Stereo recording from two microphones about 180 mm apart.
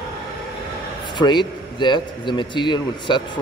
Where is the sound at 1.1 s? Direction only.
25° left (ahead or behind).